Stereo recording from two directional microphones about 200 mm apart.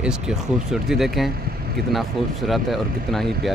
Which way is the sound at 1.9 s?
Centre (ahead or behind).